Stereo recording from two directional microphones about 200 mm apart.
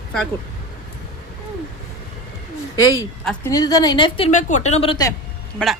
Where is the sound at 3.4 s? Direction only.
20° left (ahead or behind).